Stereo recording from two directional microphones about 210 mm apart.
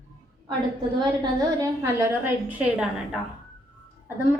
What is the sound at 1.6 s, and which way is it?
A woman's voice, 10° right (ahead or behind).